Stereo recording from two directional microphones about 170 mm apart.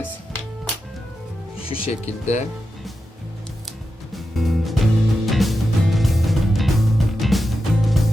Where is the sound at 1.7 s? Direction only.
35° left (ahead or behind).